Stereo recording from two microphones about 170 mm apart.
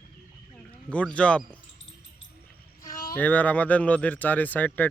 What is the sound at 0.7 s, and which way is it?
Speech, 5° left (ahead or behind).